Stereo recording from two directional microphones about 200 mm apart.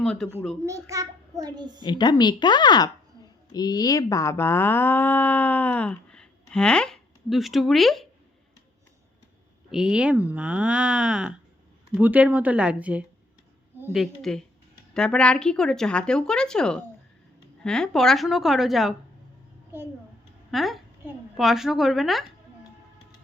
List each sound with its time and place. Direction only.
0.0 s a child's voice: 5° left (ahead or behind)
0.6 s a child's voice: 15° right (ahead or behind)
1.8 s speech: 20° left (ahead or behind); by 8.0 s centre (ahead or behind)
9.6 s speech: 5° right (ahead or behind)
13.7 s a sound: 10° right (ahead or behind)
14.0 s speech: centre (ahead or behind)
20.5 s a woman's voice: centre (ahead or behind)